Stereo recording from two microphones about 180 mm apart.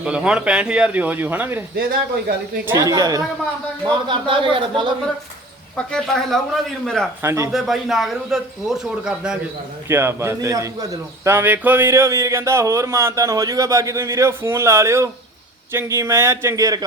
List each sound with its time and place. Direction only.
0.0 s a man's voice: 5° right (ahead or behind)
1.7 s speech: 55° right (ahead or behind)
2.6 s speech: 20° right (ahead or behind)
5.7 s speech: 5° left (ahead or behind)
7.2 s a man's voice: 15° right (ahead or behind)
7.5 s speech: centre (ahead or behind)
9.9 s a man's voice: 15° right (ahead or behind)